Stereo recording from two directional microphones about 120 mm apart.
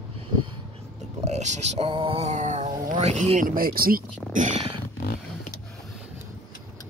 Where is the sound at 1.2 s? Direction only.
70° right (ahead or behind).